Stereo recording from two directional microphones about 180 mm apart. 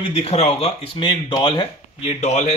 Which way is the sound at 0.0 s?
35° left (ahead or behind).